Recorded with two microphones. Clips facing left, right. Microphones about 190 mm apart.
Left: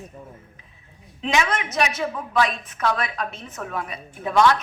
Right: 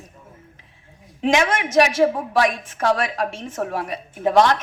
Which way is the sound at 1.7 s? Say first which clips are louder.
Right 11 dB; 90° right.